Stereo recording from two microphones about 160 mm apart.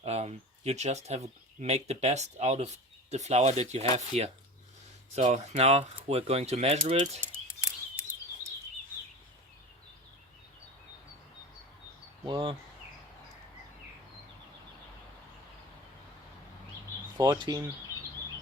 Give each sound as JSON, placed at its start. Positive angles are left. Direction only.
{"t": 0.0, "sound": "speech", "side_deg": -45}
{"t": 7.2, "sound": "a sound", "side_deg": -15}
{"t": 12.2, "sound": "speech", "side_deg": -30}
{"t": 17.2, "sound": "speech", "side_deg": -25}